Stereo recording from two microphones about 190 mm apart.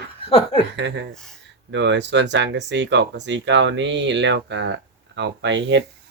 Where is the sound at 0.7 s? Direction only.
70° right (ahead or behind).